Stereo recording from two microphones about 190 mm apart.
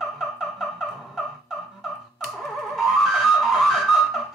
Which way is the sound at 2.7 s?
Centre (ahead or behind).